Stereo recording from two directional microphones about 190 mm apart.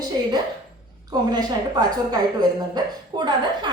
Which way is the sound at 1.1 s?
20° right (ahead or behind).